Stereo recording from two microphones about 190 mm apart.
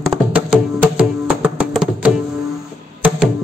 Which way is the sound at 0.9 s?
5° right (ahead or behind).